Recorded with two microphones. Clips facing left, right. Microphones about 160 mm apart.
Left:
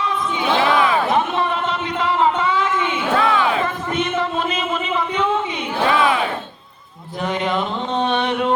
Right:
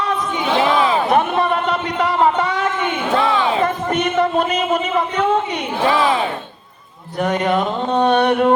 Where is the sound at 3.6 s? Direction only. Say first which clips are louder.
Right 4 dB; 65° right (ahead or behind).